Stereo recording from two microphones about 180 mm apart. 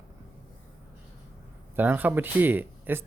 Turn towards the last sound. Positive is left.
turn(degrees=-10)  # may be behind; listen again after turning